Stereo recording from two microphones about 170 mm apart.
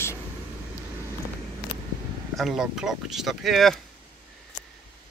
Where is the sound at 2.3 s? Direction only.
Centre (ahead or behind).